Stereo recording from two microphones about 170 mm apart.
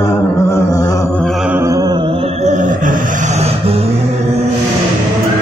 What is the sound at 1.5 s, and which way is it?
Humming, 20° right (ahead or behind).